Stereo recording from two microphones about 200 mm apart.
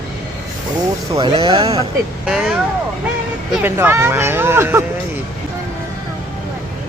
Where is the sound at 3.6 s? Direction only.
10° right (ahead or behind).